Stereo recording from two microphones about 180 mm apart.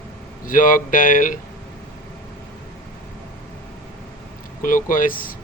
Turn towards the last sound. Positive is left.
turn(degrees=50)  # may be behind; listen again after turning